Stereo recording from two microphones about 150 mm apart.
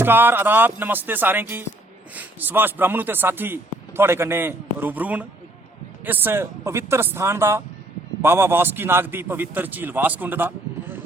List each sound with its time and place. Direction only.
0.0 s speech: 15° right (ahead or behind)